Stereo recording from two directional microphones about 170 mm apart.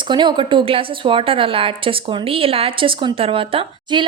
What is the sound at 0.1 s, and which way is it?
A woman's voice, 25° right (ahead or behind).